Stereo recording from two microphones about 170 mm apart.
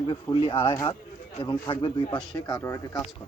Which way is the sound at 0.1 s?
25° left (ahead or behind).